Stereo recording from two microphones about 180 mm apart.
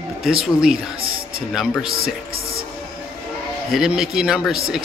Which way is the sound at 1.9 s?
55° right (ahead or behind).